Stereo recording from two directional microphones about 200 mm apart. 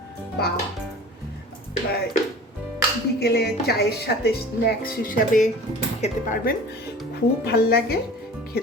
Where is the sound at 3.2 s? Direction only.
55° left (ahead or behind); by 6.2 s 30° left (ahead or behind).